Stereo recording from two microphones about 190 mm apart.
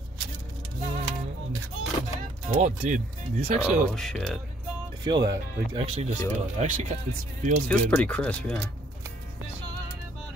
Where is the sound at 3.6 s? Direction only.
Centre (ahead or behind).